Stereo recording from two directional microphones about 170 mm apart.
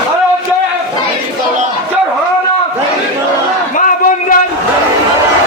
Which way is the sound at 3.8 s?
50° left (ahead or behind).